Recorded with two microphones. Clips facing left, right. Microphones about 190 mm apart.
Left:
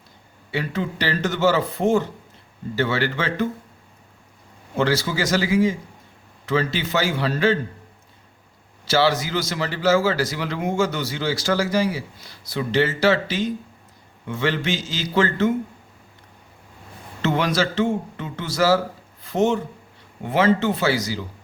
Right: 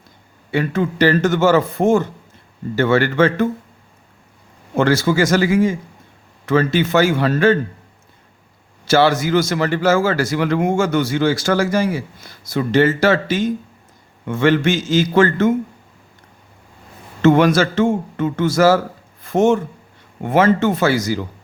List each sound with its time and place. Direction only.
0.5 s a man's voice: 50° right (ahead or behind)
4.8 s a man's voice: 50° right (ahead or behind)
8.8 s a man's voice: 50° right (ahead or behind)
17.2 s a man's voice: 50° right (ahead or behind)